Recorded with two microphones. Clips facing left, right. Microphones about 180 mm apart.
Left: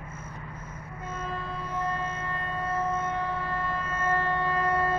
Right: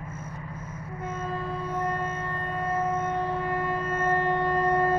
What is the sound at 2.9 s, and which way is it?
Siren, 15° right (ahead or behind).